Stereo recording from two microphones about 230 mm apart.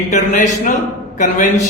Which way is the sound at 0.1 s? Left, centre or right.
Left.